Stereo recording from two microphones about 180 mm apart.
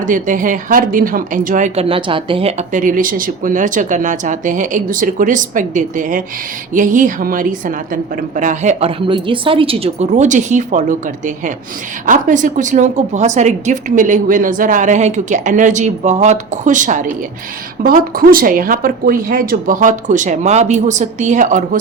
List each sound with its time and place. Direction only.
0.0 s a woman's voice: 45° right (ahead or behind)
12.0 s speech: 45° right (ahead or behind)